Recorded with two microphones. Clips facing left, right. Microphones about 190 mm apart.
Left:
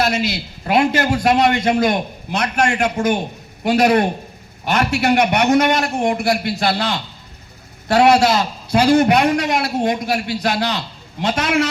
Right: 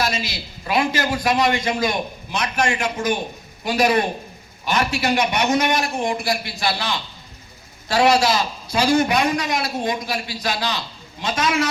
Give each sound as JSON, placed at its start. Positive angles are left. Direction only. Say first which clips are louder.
{"t": 0.0, "sound": "a man's voice", "louder": "left 5 dB", "side_deg": 60}